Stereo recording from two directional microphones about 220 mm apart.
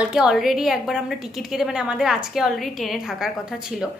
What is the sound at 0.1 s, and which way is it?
A woman's voice, centre (ahead or behind).